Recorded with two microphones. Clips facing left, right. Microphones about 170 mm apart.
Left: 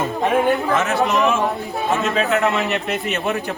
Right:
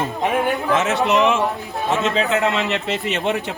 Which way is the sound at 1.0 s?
20° right (ahead or behind).